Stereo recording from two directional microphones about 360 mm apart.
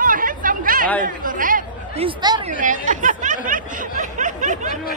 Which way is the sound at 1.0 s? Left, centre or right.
Right.